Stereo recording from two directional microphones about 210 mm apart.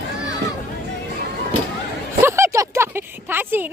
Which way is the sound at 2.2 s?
10° right (ahead or behind).